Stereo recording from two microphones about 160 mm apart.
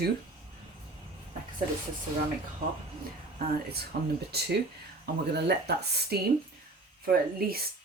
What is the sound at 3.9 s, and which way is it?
Speech, 90° right.